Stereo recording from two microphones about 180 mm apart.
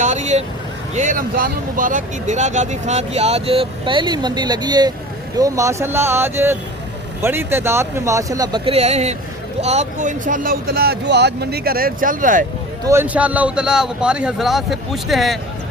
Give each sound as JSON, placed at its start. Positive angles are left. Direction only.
{"t": 0.0, "sound": "speech", "side_deg": -40}
{"t": 12.9, "sound": "speech", "side_deg": -10}